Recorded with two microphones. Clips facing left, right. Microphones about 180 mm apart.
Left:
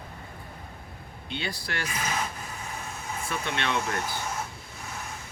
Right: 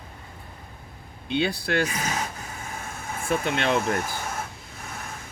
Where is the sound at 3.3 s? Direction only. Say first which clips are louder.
Right 7 dB; 50° right (ahead or behind).